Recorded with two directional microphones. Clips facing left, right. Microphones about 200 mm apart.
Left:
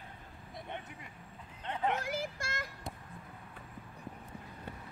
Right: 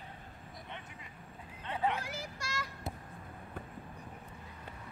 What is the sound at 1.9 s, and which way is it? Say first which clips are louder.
Child singing: left 5 dB; 50° left (ahead or behind).